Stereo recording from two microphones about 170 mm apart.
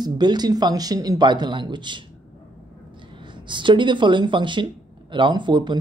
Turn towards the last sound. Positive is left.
turn(degrees=-25)  # may be behind; listen again after turning